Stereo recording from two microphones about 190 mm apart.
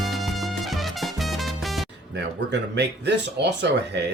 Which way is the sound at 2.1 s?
65° right (ahead or behind).